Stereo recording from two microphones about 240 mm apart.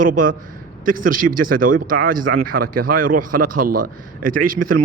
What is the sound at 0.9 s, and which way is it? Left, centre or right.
Speech, right.